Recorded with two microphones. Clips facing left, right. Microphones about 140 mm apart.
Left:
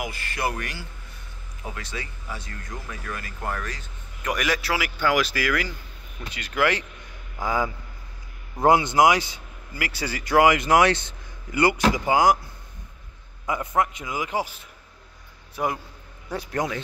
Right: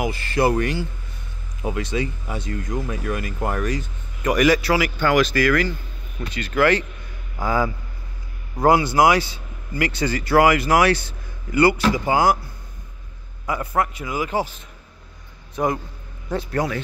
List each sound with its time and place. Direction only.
0.0 s speech: 30° right (ahead or behind)
4.2 s a man's voice: centre (ahead or behind); by 12.4 s 15° left (ahead or behind)
13.5 s a man's voice: 20° left (ahead or behind)